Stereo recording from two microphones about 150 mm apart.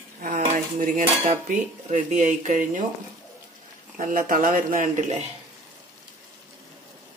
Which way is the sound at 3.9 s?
65° right (ahead or behind).